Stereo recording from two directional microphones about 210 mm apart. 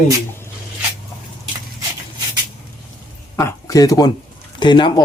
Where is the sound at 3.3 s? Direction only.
15° left (ahead or behind).